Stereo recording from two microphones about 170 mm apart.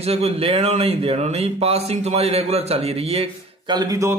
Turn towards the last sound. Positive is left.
turn(degrees=-20)  # may be behind; listen again after turning